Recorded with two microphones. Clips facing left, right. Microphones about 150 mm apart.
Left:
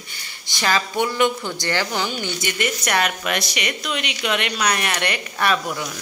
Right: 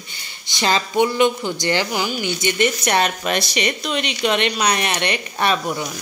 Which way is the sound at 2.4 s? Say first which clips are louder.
Right 7 dB; 25° right (ahead or behind).